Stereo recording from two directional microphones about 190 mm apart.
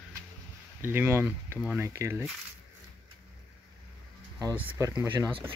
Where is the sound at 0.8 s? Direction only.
10° right (ahead or behind).